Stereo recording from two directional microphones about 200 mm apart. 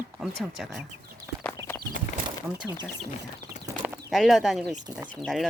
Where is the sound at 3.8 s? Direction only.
Centre (ahead or behind).